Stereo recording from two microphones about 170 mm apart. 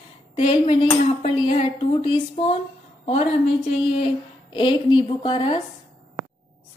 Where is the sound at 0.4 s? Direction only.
35° left (ahead or behind).